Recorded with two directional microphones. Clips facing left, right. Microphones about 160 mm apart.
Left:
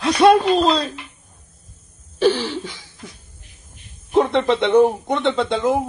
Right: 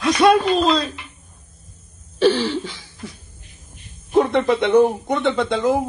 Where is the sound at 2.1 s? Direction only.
15° left (ahead or behind).